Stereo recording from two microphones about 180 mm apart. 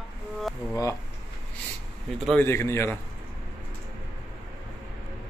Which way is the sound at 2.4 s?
15° left (ahead or behind).